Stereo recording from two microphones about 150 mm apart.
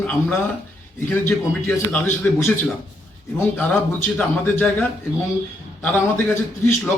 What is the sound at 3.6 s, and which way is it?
A man's voice, 10° left (ahead or behind).